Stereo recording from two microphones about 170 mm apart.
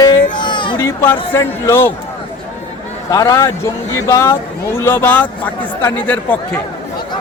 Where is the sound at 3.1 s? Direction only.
20° left (ahead or behind).